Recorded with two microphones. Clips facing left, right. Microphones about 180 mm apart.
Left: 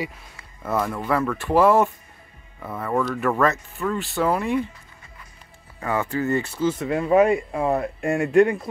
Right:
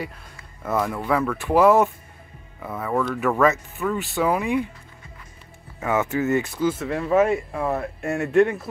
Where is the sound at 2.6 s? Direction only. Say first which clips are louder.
Even; centre (ahead or behind).